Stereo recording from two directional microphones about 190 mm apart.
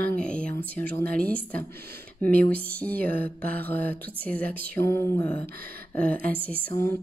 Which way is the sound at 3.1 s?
50° right (ahead or behind).